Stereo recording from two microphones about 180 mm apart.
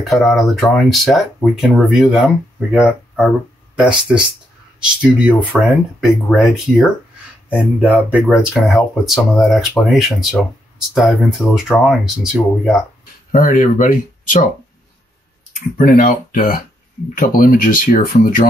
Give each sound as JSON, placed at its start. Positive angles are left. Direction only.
{"t": 0.0, "sound": "speech", "side_deg": 0}
{"t": 13.3, "sound": "speech", "side_deg": 45}
{"t": 15.8, "sound": "speech", "side_deg": 50}